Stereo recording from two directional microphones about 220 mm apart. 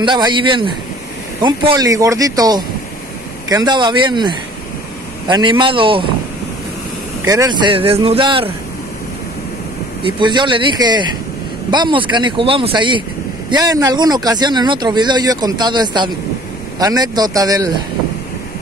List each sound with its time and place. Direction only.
0.0 s speech: 20° right (ahead or behind)
7.2 s speech: 15° right (ahead or behind)
10.0 s speech: 20° right (ahead or behind)